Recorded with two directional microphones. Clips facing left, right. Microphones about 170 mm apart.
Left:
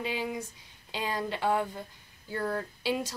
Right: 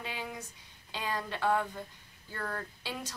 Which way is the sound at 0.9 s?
15° left (ahead or behind).